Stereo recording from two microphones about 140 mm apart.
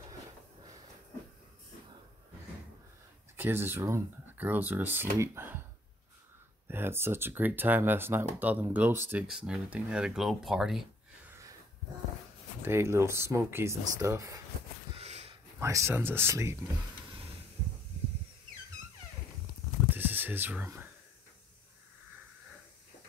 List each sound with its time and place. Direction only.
3.3 s speech: 15° right (ahead or behind)
6.7 s speech: 15° right (ahead or behind)
12.6 s speech: 20° right (ahead or behind)
15.0 s a sound: 50° right (ahead or behind)
15.6 s speech: 20° right (ahead or behind)
19.9 s a sound: 15° right (ahead or behind)